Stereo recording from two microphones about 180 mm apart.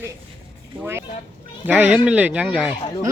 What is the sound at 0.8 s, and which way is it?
Speech, 15° right (ahead or behind).